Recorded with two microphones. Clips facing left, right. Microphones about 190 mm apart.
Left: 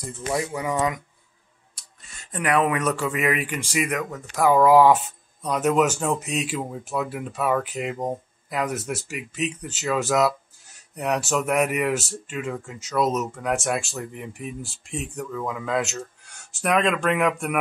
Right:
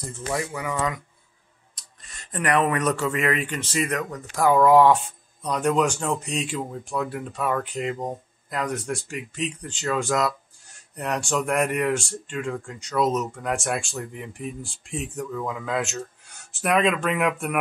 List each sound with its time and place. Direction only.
0.3 s speech: 20° left (ahead or behind)
2.1 s speech: 5° left (ahead or behind)